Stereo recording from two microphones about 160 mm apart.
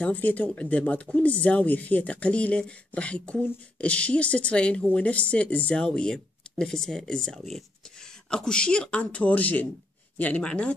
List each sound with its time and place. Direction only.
0.0 s speech: 10° left (ahead or behind)